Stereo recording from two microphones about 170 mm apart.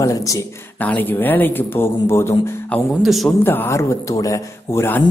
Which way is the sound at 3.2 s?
10° left (ahead or behind).